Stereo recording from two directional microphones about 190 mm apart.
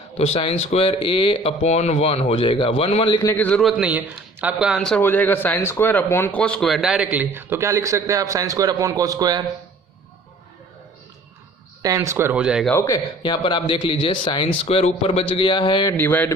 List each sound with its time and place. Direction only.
0.2 s a man's voice: 30° left (ahead or behind)
3.2 s speech: 10° left (ahead or behind); by 9.4 s 20° right (ahead or behind)
11.8 s speech: 20° right (ahead or behind)
12.7 s a man's voice: 20° left (ahead or behind)
16.0 s speech: 10° left (ahead or behind)